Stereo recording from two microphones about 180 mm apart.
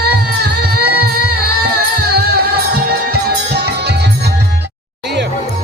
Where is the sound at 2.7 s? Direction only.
60° right (ahead or behind).